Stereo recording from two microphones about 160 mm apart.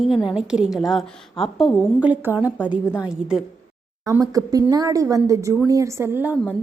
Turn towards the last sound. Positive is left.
turn(degrees=-10)  # may be behind; listen again after turning